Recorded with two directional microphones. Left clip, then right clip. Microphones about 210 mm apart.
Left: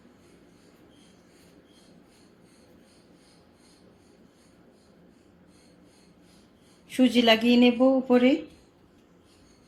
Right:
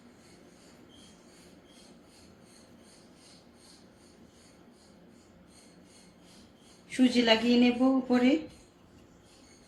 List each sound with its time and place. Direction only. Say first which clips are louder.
6.9 s speech: left 4 dB; 30° left (ahead or behind)